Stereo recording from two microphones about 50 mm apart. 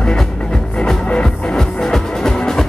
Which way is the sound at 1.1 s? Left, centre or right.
Centre.